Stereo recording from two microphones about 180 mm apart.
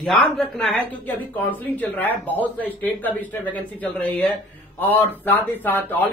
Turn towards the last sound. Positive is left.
turn(degrees=10)  # may be behind; listen again after turning